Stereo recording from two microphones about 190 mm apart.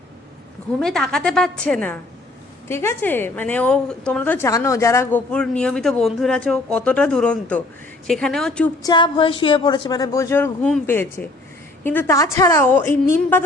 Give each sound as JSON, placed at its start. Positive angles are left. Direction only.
{"t": 0.8, "sound": "a woman's voice", "side_deg": 5}
{"t": 8.8, "sound": "a woman's voice", "side_deg": 25}